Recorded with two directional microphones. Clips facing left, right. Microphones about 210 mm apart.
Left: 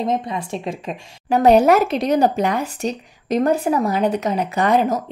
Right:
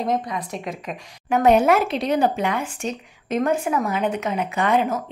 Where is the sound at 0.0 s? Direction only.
25° left (ahead or behind).